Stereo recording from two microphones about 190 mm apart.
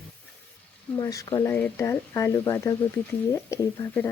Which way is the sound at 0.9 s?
20° left (ahead or behind).